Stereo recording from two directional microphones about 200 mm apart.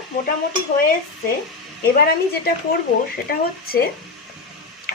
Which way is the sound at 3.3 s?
50° left (ahead or behind).